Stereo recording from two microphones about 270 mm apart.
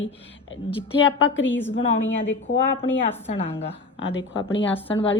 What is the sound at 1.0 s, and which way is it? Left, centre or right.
A woman's voice, left.